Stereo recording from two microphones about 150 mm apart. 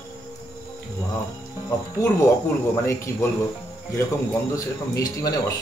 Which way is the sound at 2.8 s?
15° left (ahead or behind).